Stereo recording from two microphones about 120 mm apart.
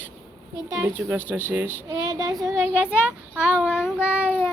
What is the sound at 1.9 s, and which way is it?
Speech, 35° right (ahead or behind).